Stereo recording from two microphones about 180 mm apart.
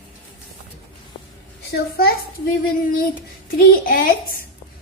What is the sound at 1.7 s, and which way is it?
Speech, 60° left (ahead or behind).